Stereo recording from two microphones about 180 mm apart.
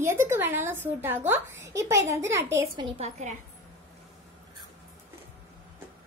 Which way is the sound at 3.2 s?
40° right (ahead or behind).